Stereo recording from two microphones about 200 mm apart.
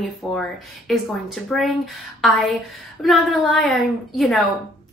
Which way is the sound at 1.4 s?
Centre (ahead or behind).